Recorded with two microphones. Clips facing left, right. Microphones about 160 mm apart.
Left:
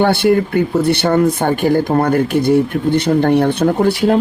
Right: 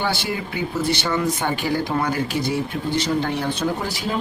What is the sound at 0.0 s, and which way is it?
Speech, 55° left (ahead or behind).